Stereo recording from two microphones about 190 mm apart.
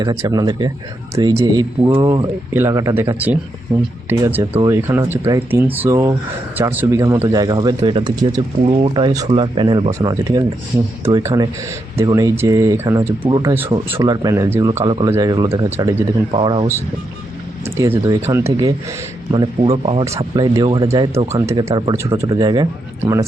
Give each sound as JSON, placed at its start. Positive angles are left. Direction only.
{"t": 0.0, "sound": "speech", "side_deg": -20}
{"t": 13.2, "sound": "speech", "side_deg": -25}
{"t": 13.8, "sound": "speech", "side_deg": -15}
{"t": 17.7, "sound": "speech", "side_deg": -15}
{"t": 21.1, "sound": "speech", "side_deg": -35}
{"t": 21.3, "sound": "speech", "side_deg": -20}